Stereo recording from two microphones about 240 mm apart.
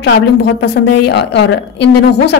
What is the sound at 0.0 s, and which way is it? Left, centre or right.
A woman's voice, left.